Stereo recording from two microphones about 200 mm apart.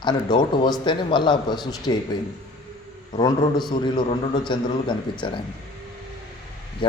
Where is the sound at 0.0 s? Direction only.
20° left (ahead or behind).